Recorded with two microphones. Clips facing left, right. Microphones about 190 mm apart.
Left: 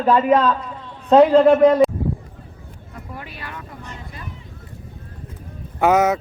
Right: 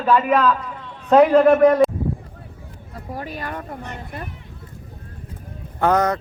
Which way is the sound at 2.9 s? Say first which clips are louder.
Right 5 dB; 35° right (ahead or behind).